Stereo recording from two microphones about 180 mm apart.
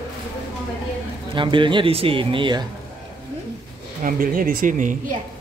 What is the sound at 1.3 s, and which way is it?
Speech, 25° right (ahead or behind).